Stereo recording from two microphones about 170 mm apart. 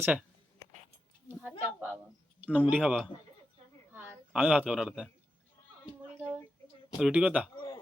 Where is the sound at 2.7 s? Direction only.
5° right (ahead or behind).